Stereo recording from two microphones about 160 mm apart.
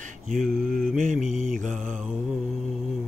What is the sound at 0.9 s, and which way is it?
Mantra, 55° right (ahead or behind).